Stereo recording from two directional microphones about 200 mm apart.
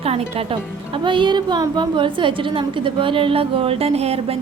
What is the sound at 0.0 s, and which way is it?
A woman's voice, 30° right (ahead or behind).